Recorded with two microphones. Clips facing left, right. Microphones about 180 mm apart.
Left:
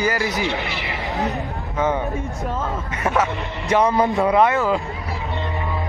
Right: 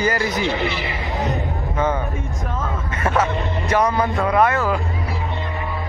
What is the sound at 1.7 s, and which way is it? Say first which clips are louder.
Speech: even; 15° left (ahead or behind).